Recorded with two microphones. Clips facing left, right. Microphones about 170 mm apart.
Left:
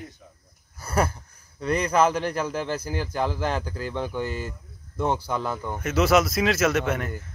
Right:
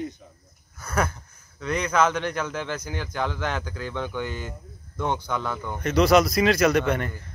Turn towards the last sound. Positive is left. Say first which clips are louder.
# right 2 dB
turn(degrees=5)  # may be behind; listen again after turning